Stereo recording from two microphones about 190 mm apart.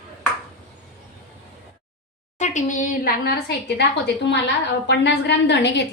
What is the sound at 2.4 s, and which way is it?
A woman's voice, 40° left (ahead or behind).